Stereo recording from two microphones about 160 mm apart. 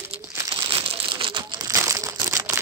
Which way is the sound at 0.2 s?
25° right (ahead or behind).